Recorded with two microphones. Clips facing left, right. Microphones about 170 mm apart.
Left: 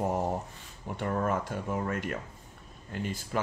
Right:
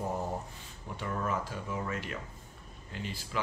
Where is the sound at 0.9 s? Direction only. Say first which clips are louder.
Left 5 dB; 50° left (ahead or behind).